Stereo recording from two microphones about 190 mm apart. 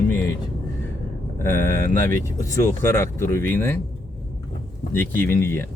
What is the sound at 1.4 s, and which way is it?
Speech, 15° left (ahead or behind).